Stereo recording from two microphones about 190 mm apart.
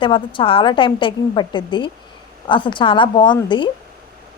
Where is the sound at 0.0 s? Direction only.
25° left (ahead or behind).